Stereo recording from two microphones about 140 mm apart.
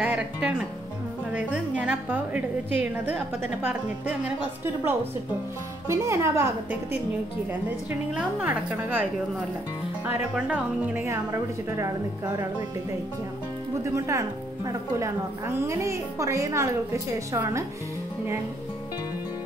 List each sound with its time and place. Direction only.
0.0 s music: 10° right (ahead or behind)
1.3 s a woman's voice: 10° right (ahead or behind)
5.9 s speech: 20° right (ahead or behind)
8.1 s a woman's voice: 5° right (ahead or behind)
10.3 s a woman's voice: 10° right (ahead or behind)
13.8 s speech: 20° right (ahead or behind)